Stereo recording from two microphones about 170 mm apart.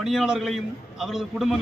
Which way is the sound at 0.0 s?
Centre (ahead or behind).